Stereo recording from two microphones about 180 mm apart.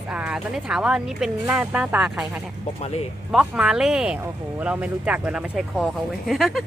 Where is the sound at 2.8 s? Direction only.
35° left (ahead or behind).